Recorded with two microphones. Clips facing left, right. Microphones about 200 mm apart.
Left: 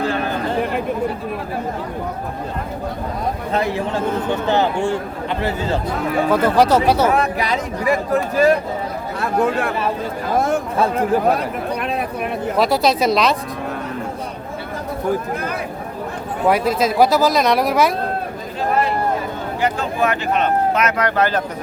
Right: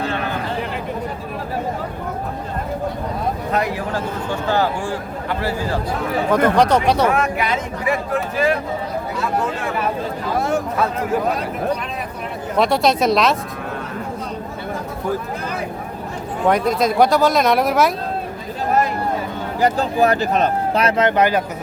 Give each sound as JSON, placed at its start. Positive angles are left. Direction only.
{"t": 3.5, "sound": "a man's voice", "side_deg": 25}
{"t": 6.3, "sound": "speech", "side_deg": 5}
{"t": 7.1, "sound": "speech", "side_deg": 35}
{"t": 9.1, "sound": "speech", "side_deg": 60}
{"t": 11.8, "sound": "a sound", "side_deg": 60}
{"t": 12.5, "sound": "speech", "side_deg": 0}
{"t": 16.5, "sound": "speech", "side_deg": 5}
{"t": 19.6, "sound": "speech", "side_deg": -35}